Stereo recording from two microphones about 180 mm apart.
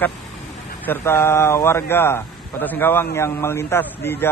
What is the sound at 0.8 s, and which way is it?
A man's voice, 15° left (ahead or behind).